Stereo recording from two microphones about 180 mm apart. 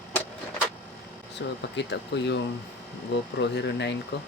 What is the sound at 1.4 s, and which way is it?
Speech, 80° left.